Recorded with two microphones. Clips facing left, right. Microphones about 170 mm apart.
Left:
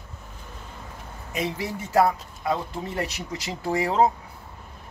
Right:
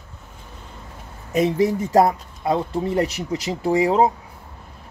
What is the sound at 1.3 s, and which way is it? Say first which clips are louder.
Speech: right 10 dB; 45° right (ahead or behind).